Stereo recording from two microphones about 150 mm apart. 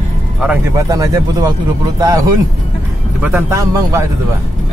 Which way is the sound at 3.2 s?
20° right (ahead or behind).